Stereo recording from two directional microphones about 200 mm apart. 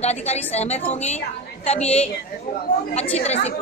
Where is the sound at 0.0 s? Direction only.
35° left (ahead or behind).